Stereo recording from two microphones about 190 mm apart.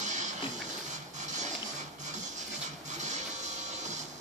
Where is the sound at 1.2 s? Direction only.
40° right (ahead or behind).